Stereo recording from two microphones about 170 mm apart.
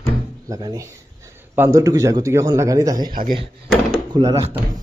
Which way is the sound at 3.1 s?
60° right (ahead or behind).